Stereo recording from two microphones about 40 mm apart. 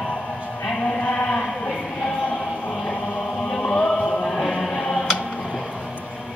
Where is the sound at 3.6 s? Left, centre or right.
Left.